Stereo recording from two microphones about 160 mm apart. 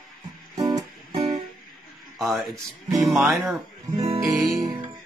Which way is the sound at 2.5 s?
20° right (ahead or behind).